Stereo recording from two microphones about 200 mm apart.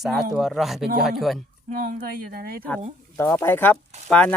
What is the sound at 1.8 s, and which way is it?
Speech, 45° right (ahead or behind).